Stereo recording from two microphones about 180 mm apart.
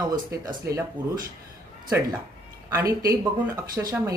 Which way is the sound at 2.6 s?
20° right (ahead or behind).